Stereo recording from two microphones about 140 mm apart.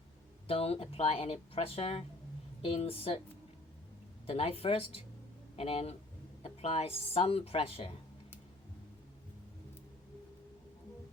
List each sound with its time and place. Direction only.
0.4 s speech: 45° left (ahead or behind)
4.3 s speech: 45° left (ahead or behind)